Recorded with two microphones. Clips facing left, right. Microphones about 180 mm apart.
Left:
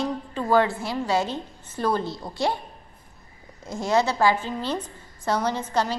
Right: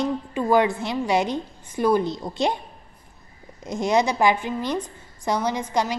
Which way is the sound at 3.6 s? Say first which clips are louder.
Right 2 dB; 20° right (ahead or behind).